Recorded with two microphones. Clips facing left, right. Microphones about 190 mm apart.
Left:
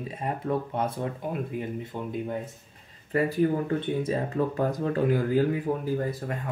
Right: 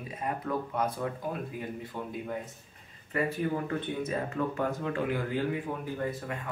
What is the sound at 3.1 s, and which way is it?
Speech, 35° left (ahead or behind).